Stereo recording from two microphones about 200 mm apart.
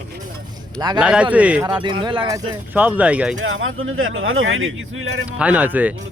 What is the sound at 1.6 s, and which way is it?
Speech, 25° right (ahead or behind).